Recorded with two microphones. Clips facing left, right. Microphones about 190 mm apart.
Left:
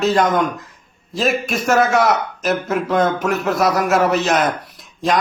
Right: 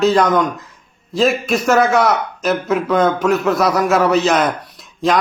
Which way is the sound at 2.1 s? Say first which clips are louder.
Right 1 dB; centre (ahead or behind).